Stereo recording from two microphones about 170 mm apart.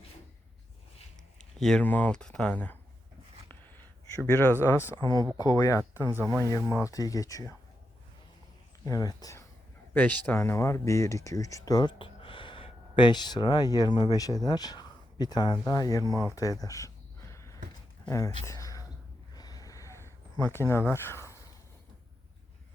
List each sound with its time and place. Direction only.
1.4 s speech: 5° left (ahead or behind)
4.1 s speech: 15° left (ahead or behind)
4.9 s speech: 25° right (ahead or behind)
5.4 s speech: 25° left (ahead or behind)
5.9 s speech: 15° right (ahead or behind)
6.9 s speech: 20° left (ahead or behind)
8.8 s speech: 20° left (ahead or behind)
9.9 s speech: 10° left (ahead or behind)
16.3 s a sound: 20° left (ahead or behind)
20.4 s speech: 15° left (ahead or behind)